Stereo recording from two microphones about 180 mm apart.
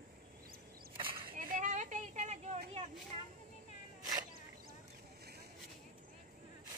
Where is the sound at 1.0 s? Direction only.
50° right (ahead or behind).